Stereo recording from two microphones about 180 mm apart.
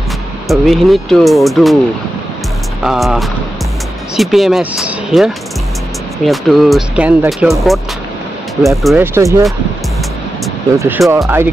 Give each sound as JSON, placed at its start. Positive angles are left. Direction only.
{"t": 0.5, "sound": "speech", "side_deg": 0}
{"t": 2.8, "sound": "speech", "side_deg": -5}
{"t": 9.0, "sound": "speech", "side_deg": -15}
{"t": 10.8, "sound": "speech", "side_deg": -15}